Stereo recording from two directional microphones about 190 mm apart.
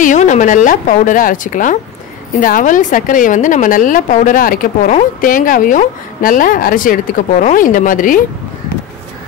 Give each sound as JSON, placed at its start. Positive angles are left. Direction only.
{"t": 0.0, "sound": "a woman's voice", "side_deg": 40}